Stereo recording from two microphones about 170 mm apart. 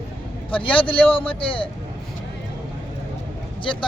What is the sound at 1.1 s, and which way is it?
Speech, 30° left (ahead or behind).